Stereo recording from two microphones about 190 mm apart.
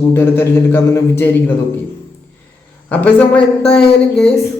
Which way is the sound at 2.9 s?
10° left (ahead or behind).